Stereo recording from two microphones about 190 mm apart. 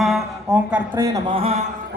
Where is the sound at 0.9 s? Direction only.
20° right (ahead or behind).